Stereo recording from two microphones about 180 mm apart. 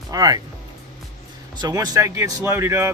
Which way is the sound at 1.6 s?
20° right (ahead or behind).